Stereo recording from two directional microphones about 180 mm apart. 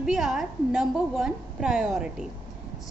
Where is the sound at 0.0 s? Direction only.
5° right (ahead or behind).